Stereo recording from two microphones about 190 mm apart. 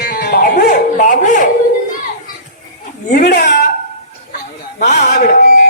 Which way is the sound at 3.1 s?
50° left (ahead or behind).